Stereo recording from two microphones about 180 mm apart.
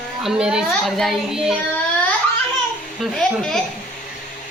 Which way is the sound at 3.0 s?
Centre (ahead or behind).